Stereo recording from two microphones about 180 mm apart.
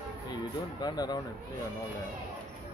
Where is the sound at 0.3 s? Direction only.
20° left (ahead or behind).